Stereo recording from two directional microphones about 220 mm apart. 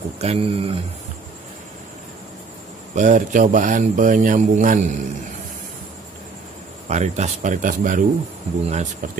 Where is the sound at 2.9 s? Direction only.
35° right (ahead or behind).